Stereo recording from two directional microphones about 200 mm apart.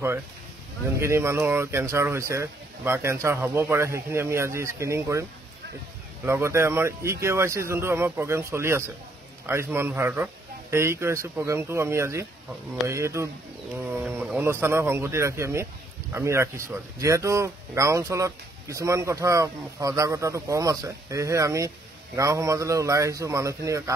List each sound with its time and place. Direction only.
0.9 s speech: 15° right (ahead or behind)
6.2 s speech: 15° right (ahead or behind)